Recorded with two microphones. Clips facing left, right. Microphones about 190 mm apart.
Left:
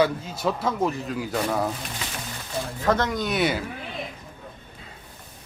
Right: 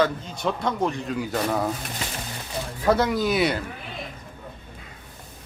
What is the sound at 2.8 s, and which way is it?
Speech, 10° right (ahead or behind).